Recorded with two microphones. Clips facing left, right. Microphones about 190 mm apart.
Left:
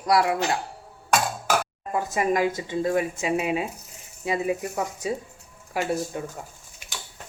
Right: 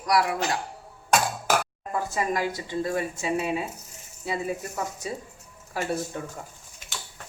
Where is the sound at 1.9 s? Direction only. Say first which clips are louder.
Left 4 dB; 20° left (ahead or behind).